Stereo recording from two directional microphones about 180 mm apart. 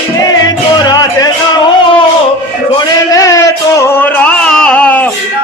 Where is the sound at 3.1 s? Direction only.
20° left (ahead or behind).